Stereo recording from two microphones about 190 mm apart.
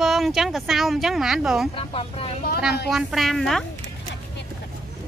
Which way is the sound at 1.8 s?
30° left (ahead or behind).